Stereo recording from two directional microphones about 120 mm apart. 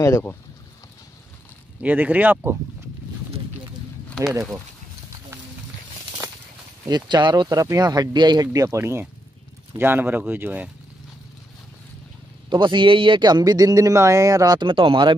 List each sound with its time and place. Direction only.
0.0 s speech: 20° left (ahead or behind)
1.8 s speech: 15° right (ahead or behind)
4.1 s a sound: 5° right (ahead or behind)
6.9 s a man's voice: 40° right (ahead or behind)
7.4 s a man's voice: 30° right (ahead or behind)
12.4 s a man's voice: 40° right (ahead or behind)